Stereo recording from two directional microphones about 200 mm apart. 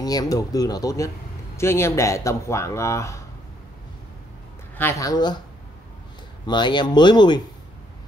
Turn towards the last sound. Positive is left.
turn(degrees=20)  # may be behind; listen again after turning